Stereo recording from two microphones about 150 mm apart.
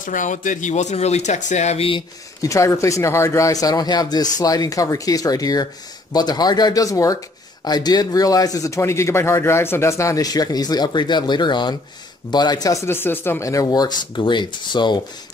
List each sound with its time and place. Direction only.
0.0 s speech: 60° left (ahead or behind); by 2.0 s 40° left (ahead or behind)
2.4 s a man's voice: 20° left (ahead or behind)